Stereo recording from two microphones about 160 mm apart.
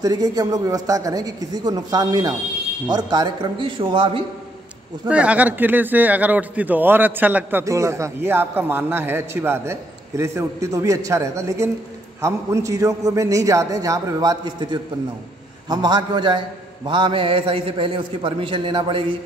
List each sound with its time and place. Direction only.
0.0 s a man's voice: 25° right (ahead or behind)
5.0 s a man's voice: 10° right (ahead or behind); by 19.0 s 30° right (ahead or behind)